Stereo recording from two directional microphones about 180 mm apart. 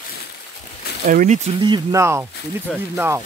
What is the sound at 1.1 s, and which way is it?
Speech, 45° right (ahead or behind).